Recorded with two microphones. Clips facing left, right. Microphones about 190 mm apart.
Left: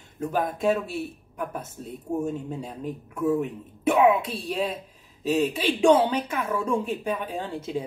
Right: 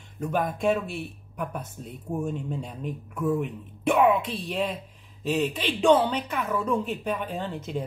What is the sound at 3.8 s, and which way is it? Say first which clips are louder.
A woman's voice: left 1 dB; 5° left (ahead or behind).